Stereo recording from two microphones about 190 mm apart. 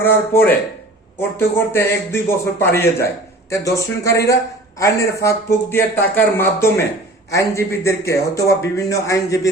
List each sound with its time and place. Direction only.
0.0 s a man's voice: 10° left (ahead or behind)